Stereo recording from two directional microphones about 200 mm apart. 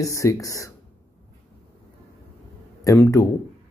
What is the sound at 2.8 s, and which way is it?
Speech, 15° left (ahead or behind).